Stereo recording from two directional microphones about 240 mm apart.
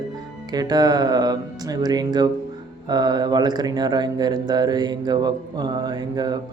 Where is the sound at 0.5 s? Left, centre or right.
Centre.